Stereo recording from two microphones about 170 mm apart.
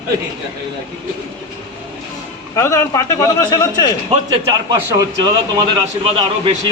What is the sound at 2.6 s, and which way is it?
A man's voice, 20° left (ahead or behind).